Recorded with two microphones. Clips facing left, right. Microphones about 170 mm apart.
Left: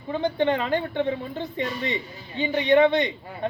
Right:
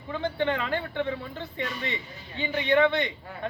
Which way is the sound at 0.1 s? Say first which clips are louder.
Left 5 dB; 20° left (ahead or behind).